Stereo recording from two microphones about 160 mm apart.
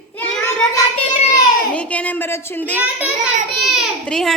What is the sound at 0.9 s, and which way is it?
Speech, 40° left (ahead or behind).